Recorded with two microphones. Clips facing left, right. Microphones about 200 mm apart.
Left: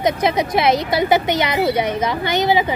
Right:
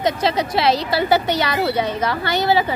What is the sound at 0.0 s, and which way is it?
A woman's voice, 20° left (ahead or behind).